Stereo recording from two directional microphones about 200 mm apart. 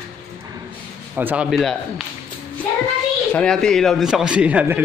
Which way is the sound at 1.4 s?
Centre (ahead or behind).